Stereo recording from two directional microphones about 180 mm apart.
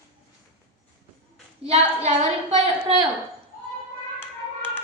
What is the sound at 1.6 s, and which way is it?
A woman's voice, 40° right (ahead or behind).